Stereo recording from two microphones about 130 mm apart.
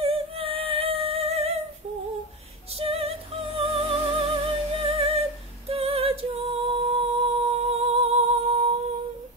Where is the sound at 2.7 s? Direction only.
50° right (ahead or behind).